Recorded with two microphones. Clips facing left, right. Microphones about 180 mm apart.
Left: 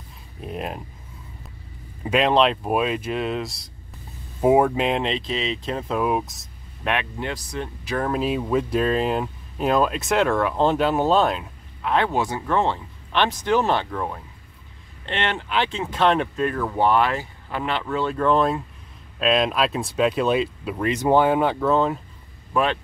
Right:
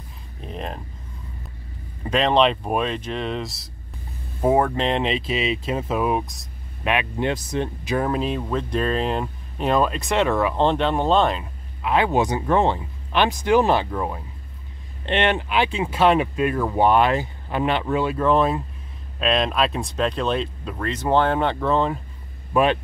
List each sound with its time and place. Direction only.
0.4 s speech: 5° left (ahead or behind)
2.0 s speech: 5° left (ahead or behind)
7.2 s speech: 20° right (ahead or behind)
8.0 s speech: centre (ahead or behind)
12.1 s speech: 15° right (ahead or behind); by 22.0 s centre (ahead or behind)
22.5 s speech: 15° right (ahead or behind)